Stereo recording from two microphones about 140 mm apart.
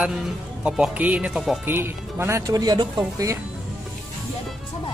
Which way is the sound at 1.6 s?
15° right (ahead or behind).